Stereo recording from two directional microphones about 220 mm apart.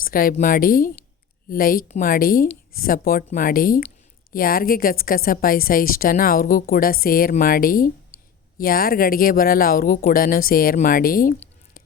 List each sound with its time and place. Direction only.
0.0 s a woman's voice: 40° left (ahead or behind)